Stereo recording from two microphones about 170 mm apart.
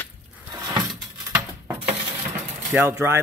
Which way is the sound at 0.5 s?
20° right (ahead or behind).